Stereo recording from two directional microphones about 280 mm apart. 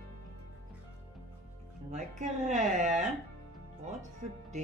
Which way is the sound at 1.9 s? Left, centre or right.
Right.